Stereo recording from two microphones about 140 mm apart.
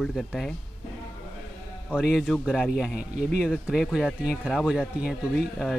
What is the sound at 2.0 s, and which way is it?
Speech, 5° right (ahead or behind).